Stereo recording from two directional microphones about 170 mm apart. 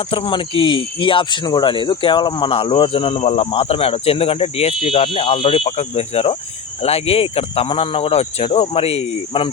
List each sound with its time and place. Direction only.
0.1 s speech: 30° left (ahead or behind)